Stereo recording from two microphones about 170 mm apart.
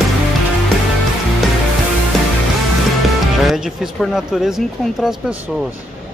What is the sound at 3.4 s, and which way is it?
Speech, 5° right (ahead or behind).